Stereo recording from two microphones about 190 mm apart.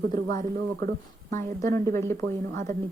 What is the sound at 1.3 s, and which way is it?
Speech, 15° left (ahead or behind).